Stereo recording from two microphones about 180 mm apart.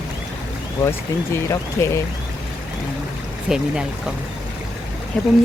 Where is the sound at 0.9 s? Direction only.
15° left (ahead or behind).